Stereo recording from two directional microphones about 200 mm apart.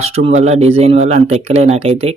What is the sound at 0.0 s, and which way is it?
Speech, 30° right (ahead or behind).